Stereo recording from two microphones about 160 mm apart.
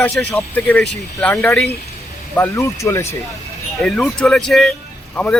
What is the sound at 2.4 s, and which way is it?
Speech, 20° left (ahead or behind).